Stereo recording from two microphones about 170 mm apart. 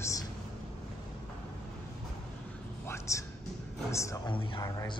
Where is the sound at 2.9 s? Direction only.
20° left (ahead or behind).